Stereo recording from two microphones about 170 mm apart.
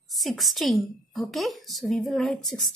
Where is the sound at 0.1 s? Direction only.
Centre (ahead or behind).